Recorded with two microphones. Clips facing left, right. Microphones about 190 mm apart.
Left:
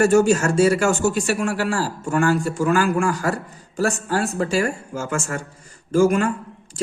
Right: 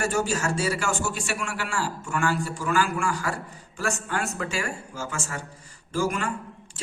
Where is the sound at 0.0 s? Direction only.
45° left (ahead or behind).